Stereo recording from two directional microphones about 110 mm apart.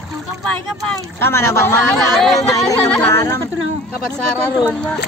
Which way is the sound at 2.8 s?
15° left (ahead or behind).